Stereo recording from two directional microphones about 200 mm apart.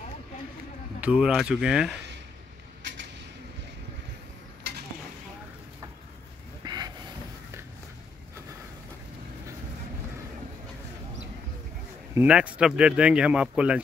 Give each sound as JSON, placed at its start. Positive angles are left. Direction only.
{"t": 1.0, "sound": "speech", "side_deg": -5}
{"t": 6.6, "sound": "a sound", "side_deg": -20}
{"t": 12.1, "sound": "speech", "side_deg": -5}